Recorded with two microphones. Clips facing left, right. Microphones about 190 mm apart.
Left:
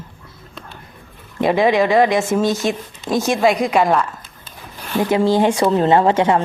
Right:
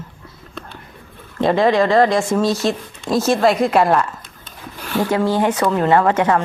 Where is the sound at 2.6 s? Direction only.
Centre (ahead or behind).